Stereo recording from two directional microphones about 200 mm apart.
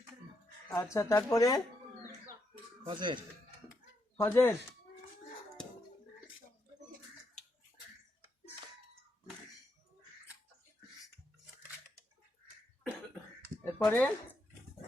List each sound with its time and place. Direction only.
0.7 s speech: 15° left (ahead or behind)
2.8 s speech: 25° right (ahead or behind)
4.2 s speech: 10° left (ahead or behind)
13.7 s a sound: 10° left (ahead or behind)